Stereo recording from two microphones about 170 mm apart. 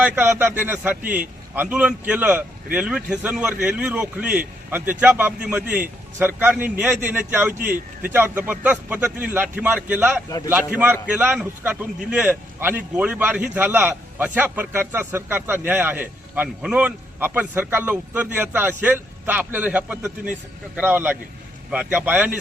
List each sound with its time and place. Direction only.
0.0 s a man's voice: 10° right (ahead or behind)
10.2 s a man's voice: 20° left (ahead or behind)
10.5 s a man's voice: 10° right (ahead or behind)